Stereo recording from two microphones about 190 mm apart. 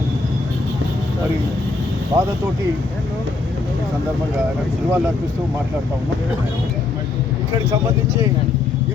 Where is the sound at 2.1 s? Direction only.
25° right (ahead or behind).